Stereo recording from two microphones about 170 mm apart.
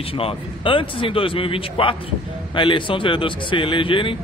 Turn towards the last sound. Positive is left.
turn(degrees=30)  # may be behind; listen again after turning